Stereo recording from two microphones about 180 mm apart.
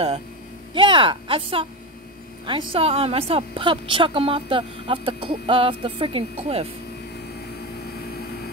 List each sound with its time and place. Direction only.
0.7 s a woman's voice: 25° right (ahead or behind)